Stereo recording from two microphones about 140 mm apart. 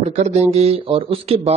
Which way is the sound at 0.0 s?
50° right (ahead or behind).